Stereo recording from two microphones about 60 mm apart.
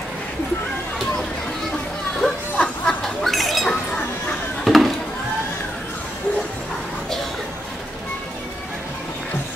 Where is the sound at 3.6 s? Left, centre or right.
Centre.